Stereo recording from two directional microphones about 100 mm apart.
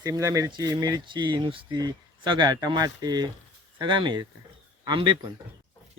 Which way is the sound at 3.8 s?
55° right (ahead or behind).